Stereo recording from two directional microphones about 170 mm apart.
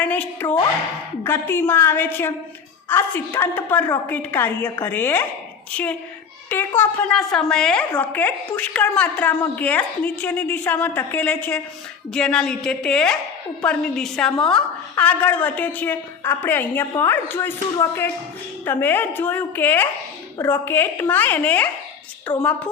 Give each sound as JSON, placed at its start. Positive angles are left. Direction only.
{"t": 0.0, "sound": "a woman's voice", "side_deg": 10}
{"t": 22.3, "sound": "a woman's voice", "side_deg": 25}